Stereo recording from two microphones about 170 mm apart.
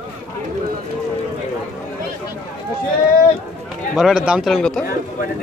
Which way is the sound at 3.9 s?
Centre (ahead or behind).